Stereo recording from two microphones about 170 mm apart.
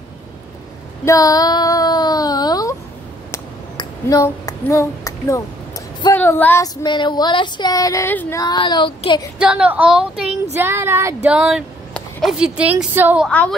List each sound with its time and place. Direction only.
1.0 s child singing: 20° left (ahead or behind)
3.3 s a sound: 20° left (ahead or behind)
6.1 s female singing: 10° left (ahead or behind); by 9.3 s 30° left (ahead or behind)
9.4 s speech: 5° right (ahead or behind)
11.2 s speech: 5° right (ahead or behind)
11.9 s a sound: centre (ahead or behind)
12.9 s speech: 10° right (ahead or behind)
13.3 s a woman's voice: 10° left (ahead or behind)